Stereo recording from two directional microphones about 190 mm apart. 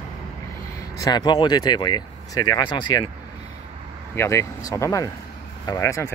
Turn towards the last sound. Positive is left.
turn(degrees=15)  # may be behind; listen again after turning